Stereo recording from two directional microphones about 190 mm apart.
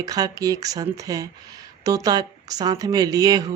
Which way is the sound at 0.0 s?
20° right (ahead or behind).